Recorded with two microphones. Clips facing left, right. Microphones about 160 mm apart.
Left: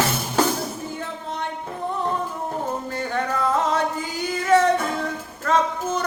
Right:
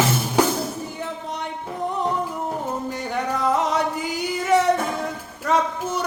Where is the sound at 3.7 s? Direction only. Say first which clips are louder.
Even; 15° right (ahead or behind).